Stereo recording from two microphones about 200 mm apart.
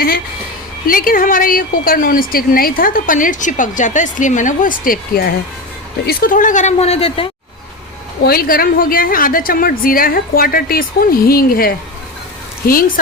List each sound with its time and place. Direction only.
0.9 s a woman's voice: 45° left (ahead or behind); by 7.3 s 30° left (ahead or behind)
8.2 s speech: 50° left (ahead or behind)